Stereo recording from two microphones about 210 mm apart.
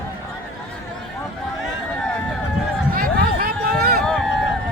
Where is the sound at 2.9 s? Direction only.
45° right (ahead or behind).